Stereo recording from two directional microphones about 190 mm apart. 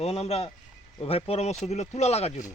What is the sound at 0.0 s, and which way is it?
Speech, 35° left (ahead or behind).